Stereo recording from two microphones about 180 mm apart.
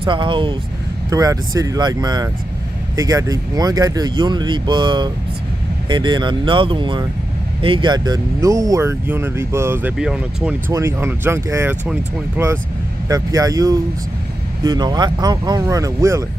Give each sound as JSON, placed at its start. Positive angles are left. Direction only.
{"t": 0.0, "sound": "speech", "side_deg": -25}
{"t": 10.7, "sound": "speech", "side_deg": -15}